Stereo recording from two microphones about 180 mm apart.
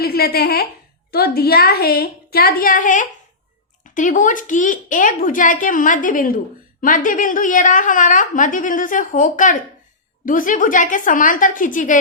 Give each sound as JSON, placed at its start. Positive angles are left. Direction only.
{"t": 0.0, "sound": "a woman's voice", "side_deg": 60}